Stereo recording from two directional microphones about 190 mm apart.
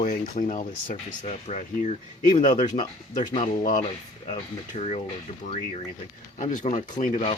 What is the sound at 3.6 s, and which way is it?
Speech, 35° left (ahead or behind).